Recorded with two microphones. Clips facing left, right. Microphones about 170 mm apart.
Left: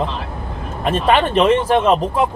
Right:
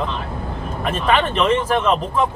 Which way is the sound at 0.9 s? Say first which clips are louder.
Left 3 dB; 30° left (ahead or behind).